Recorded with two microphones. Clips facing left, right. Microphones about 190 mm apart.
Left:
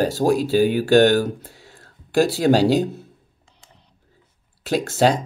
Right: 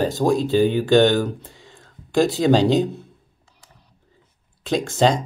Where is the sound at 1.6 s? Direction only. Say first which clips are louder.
Right 1 dB; 10° left (ahead or behind).